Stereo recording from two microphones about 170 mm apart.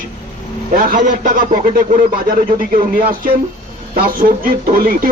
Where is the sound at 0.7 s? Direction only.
55° right (ahead or behind).